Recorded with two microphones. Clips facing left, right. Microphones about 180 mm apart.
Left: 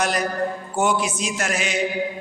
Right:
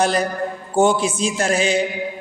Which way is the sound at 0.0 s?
30° right (ahead or behind).